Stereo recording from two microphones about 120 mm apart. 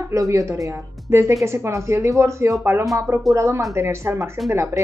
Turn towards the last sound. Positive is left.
turn(degrees=-25)  # may be behind; listen again after turning